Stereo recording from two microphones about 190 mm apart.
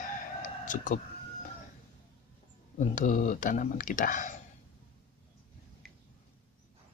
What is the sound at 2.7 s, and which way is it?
Speech, 40° left (ahead or behind).